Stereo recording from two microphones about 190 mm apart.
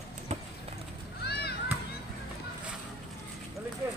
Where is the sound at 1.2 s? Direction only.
60° left (ahead or behind).